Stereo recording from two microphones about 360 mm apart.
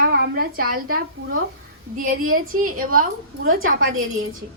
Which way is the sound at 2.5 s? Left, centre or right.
Right.